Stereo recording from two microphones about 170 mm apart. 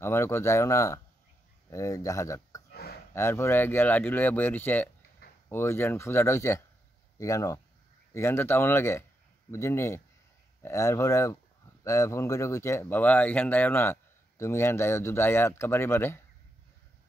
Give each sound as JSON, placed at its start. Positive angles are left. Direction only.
{"t": 0.0, "sound": "speech", "side_deg": 15}
{"t": 2.7, "sound": "a sound", "side_deg": 65}
{"t": 3.2, "sound": "speech", "side_deg": 15}